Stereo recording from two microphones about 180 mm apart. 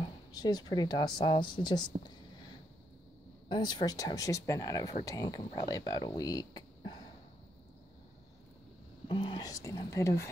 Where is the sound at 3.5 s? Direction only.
25° left (ahead or behind).